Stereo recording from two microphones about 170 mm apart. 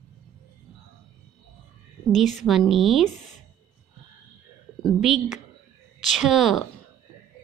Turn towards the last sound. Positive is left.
turn(degrees=0)  # may be behind; listen again after turning